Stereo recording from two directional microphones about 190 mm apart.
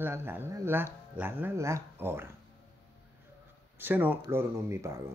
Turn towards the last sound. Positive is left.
turn(degrees=-15)  # may be behind; listen again after turning